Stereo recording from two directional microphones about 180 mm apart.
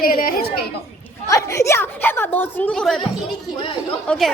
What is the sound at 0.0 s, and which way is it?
Chatter, 55° left (ahead or behind).